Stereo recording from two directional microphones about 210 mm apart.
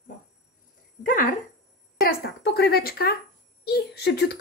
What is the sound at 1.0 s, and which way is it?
A woman's voice, 40° left (ahead or behind).